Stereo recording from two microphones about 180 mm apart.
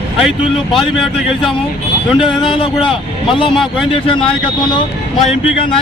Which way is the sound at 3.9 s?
30° left (ahead or behind).